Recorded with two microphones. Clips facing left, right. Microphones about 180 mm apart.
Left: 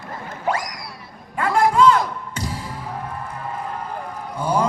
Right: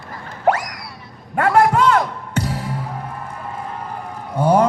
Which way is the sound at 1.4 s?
65° right (ahead or behind).